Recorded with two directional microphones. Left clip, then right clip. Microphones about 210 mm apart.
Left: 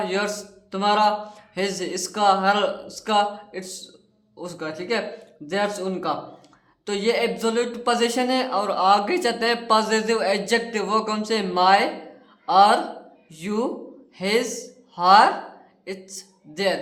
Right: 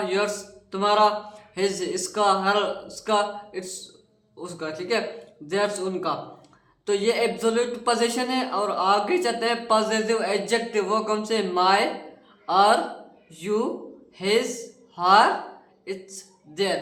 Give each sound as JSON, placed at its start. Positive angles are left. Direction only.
{"t": 0.0, "sound": "a woman's voice", "side_deg": 25}